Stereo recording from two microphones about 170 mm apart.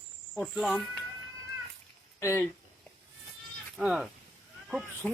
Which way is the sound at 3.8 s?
5° right (ahead or behind).